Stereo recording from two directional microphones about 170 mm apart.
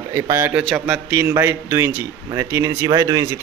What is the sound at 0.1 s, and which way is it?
A man's voice, 15° right (ahead or behind).